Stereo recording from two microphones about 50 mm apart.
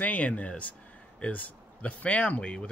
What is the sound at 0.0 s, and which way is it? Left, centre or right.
Speech, left.